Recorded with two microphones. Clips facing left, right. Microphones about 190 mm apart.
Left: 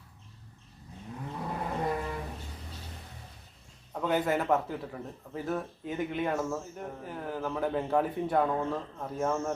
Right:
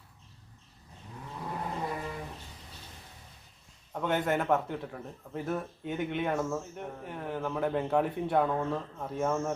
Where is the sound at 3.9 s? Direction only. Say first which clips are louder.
Left 1 dB; centre (ahead or behind).